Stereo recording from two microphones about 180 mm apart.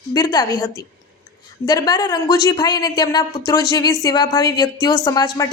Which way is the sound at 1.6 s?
20° left (ahead or behind).